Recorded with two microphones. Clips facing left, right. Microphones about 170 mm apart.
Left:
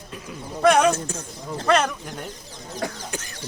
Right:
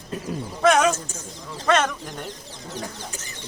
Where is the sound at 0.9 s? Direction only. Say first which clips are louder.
Left 6 dB; 60° left (ahead or behind).